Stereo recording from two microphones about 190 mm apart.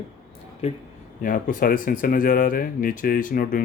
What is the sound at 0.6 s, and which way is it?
Speech, 35° left (ahead or behind).